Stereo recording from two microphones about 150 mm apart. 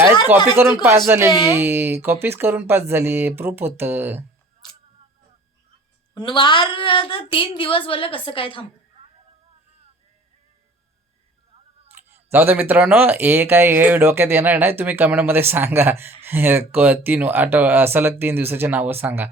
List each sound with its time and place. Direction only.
0.5 s speech: 15° right (ahead or behind)
6.1 s a woman's voice: 30° left (ahead or behind)
11.9 s speech: 15° right (ahead or behind)